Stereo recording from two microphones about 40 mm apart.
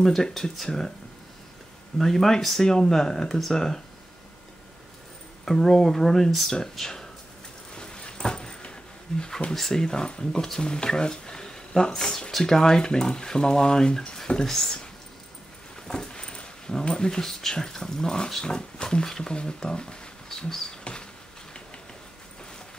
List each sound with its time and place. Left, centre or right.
0.0 s speech: centre
2.0 s speech: centre
5.4 s speech: centre
7.7 s a sound: left
9.1 s speech: left
15.9 s speech: left